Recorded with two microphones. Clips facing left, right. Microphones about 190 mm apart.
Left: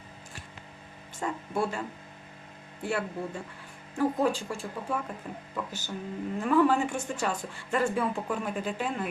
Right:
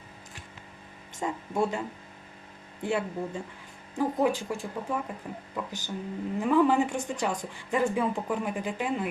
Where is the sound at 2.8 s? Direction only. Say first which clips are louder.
Right 2 dB; 20° right (ahead or behind).